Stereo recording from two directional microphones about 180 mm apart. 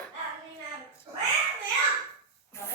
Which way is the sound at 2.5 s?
15° left (ahead or behind).